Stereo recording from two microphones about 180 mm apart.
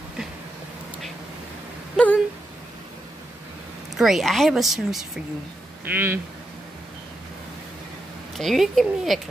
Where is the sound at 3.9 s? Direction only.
Centre (ahead or behind).